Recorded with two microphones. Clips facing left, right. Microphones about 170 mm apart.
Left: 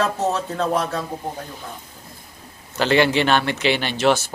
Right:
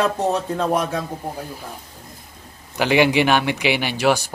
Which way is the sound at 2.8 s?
15° right (ahead or behind).